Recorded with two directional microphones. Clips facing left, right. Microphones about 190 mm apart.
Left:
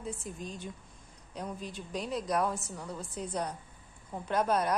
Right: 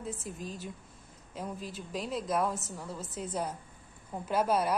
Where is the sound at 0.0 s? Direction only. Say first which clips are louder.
Even; centre (ahead or behind).